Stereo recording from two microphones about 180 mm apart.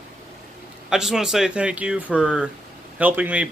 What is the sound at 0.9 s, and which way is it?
Speech, centre (ahead or behind).